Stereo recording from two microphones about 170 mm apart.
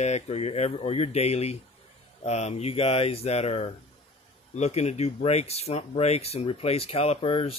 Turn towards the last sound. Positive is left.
turn(degrees=35)  # may be behind; listen again after turning